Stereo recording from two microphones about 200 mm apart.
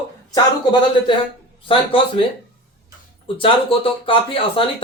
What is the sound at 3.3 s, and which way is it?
Speech, 25° left (ahead or behind).